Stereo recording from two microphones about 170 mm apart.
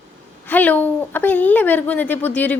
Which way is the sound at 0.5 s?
10° left (ahead or behind).